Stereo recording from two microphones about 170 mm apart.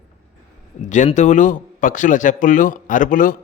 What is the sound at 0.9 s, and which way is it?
Speech, 45° left (ahead or behind).